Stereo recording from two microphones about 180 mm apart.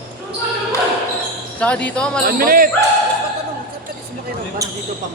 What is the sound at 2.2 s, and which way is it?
Speech, 55° right (ahead or behind).